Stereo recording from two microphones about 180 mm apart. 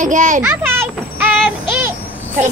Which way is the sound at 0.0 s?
45° right (ahead or behind).